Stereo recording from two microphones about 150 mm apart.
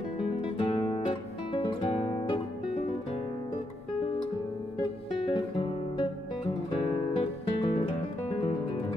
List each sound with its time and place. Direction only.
0.6 s music: 40° left (ahead or behind)
5.1 s guitar: 35° left (ahead or behind)
7.2 s music: 40° left (ahead or behind)